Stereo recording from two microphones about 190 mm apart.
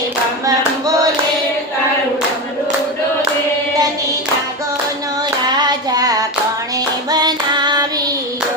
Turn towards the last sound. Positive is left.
turn(degrees=-20)  # may be behind; listen again after turning